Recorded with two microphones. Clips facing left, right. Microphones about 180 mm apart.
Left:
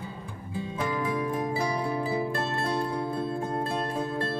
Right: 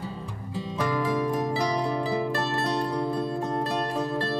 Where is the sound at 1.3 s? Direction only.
40° right (ahead or behind).